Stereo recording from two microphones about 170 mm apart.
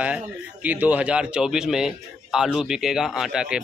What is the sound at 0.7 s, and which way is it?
A man's voice, 10° right (ahead or behind).